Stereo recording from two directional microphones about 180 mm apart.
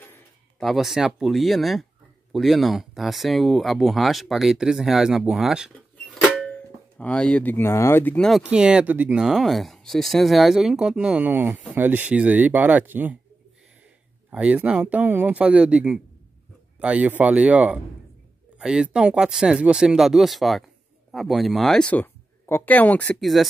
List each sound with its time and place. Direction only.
0.6 s speech: centre (ahead or behind)
14.3 s speech: 5° right (ahead or behind)